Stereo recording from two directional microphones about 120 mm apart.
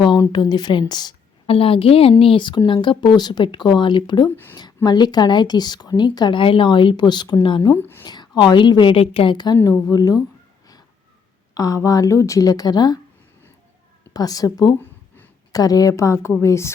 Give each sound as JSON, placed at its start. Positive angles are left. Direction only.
{"t": 0.2, "sound": "a woman's voice", "side_deg": 35}
{"t": 1.5, "sound": "a woman's voice", "side_deg": 50}
{"t": 7.7, "sound": "a woman's voice", "side_deg": 20}
{"t": 8.0, "sound": "a sound", "side_deg": 35}
{"t": 8.4, "sound": "a woman's voice", "side_deg": 40}
{"t": 11.5, "sound": "a woman's voice", "side_deg": 30}
{"t": 14.1, "sound": "a woman's voice", "side_deg": 30}